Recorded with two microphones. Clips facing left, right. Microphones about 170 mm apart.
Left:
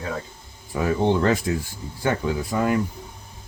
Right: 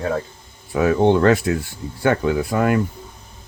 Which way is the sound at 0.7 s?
70° right (ahead or behind).